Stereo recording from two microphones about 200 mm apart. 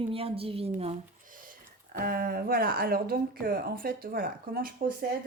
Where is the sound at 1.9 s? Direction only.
45° right (ahead or behind).